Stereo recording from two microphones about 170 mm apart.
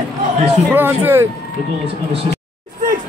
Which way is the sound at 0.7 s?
10° right (ahead or behind).